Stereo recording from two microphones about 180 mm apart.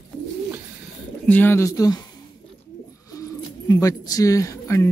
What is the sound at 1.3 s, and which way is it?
Speech, 10° left (ahead or behind).